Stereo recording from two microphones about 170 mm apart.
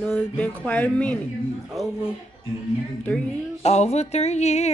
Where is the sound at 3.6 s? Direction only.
40° left (ahead or behind).